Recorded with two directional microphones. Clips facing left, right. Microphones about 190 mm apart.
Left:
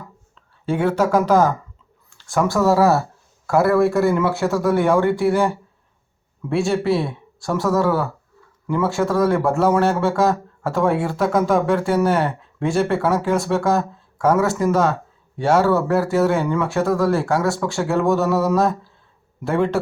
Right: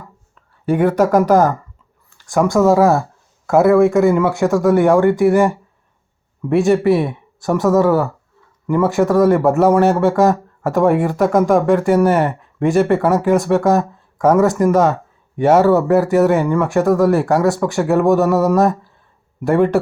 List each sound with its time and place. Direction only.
0.3 s a man's voice: 10° right (ahead or behind)
2.7 s speech: 5° left (ahead or behind)
3.4 s a man's voice: 20° right (ahead or behind)